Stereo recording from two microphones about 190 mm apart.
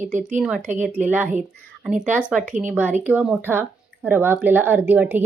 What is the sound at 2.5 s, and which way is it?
Speech, 40° right (ahead or behind).